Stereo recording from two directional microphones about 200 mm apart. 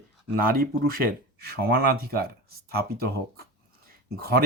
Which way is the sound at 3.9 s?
50° right (ahead or behind).